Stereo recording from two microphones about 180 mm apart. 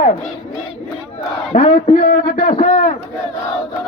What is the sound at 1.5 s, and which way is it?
A man's voice, 45° left (ahead or behind).